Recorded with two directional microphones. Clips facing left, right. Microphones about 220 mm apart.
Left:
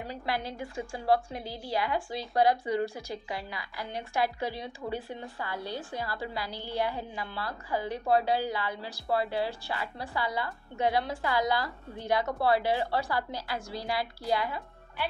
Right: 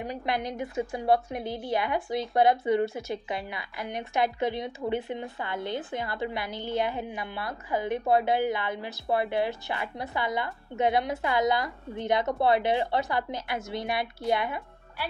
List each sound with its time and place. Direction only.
0.0 s a woman's voice: 20° right (ahead or behind)